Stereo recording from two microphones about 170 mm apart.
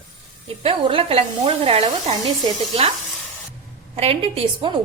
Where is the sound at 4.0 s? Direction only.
35° right (ahead or behind).